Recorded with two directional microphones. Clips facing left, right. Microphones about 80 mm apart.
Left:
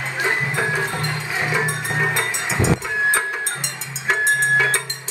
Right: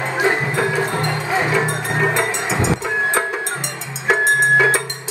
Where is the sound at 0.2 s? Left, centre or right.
Right.